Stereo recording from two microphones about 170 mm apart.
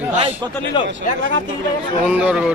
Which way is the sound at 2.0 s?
5° right (ahead or behind).